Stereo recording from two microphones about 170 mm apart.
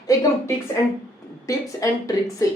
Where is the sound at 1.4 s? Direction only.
20° left (ahead or behind).